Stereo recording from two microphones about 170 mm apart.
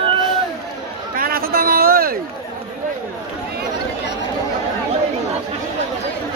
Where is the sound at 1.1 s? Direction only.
60° right (ahead or behind).